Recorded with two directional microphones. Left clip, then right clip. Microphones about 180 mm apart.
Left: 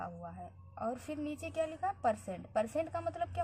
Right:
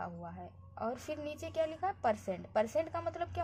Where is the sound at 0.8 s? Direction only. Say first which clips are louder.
Even; 30° right (ahead or behind).